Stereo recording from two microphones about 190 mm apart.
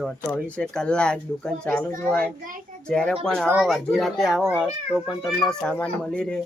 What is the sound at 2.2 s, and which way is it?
Speech, 45° right (ahead or behind).